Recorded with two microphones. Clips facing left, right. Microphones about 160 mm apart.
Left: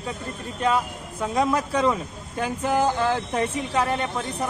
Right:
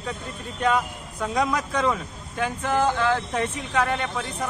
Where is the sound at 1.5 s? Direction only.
10° left (ahead or behind).